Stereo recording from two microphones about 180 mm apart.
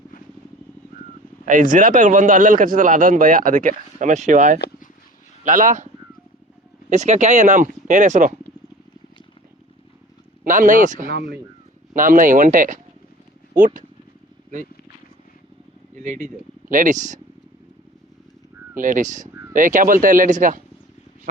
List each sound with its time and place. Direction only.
1.5 s speech: 45° right (ahead or behind)
6.9 s speech: 40° right (ahead or behind)
10.4 s speech: 45° right (ahead or behind); by 11.3 s 65° right (ahead or behind)
11.9 s speech: 45° right (ahead or behind)
16.0 s speech: 50° right (ahead or behind)
18.8 s speech: 45° right (ahead or behind)